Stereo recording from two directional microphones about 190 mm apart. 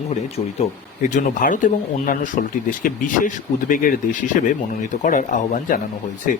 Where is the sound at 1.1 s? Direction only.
45° left (ahead or behind).